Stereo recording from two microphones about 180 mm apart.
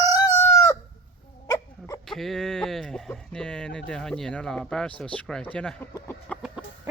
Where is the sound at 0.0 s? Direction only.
20° left (ahead or behind).